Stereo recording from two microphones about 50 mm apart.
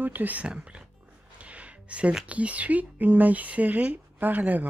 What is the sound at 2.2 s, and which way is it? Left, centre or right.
Speech, right.